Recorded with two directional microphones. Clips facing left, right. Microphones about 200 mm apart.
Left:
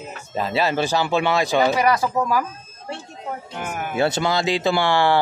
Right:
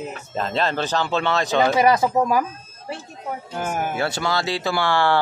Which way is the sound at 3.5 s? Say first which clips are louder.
Right 6 dB; 35° right (ahead or behind).